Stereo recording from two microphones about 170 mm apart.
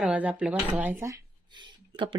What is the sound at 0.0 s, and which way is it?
Speech, 10° right (ahead or behind).